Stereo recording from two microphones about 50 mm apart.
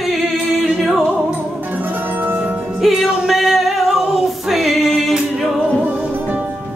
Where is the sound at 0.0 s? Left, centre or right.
Centre.